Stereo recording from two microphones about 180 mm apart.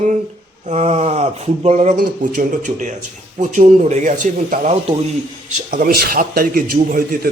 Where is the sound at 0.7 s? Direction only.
35° right (ahead or behind).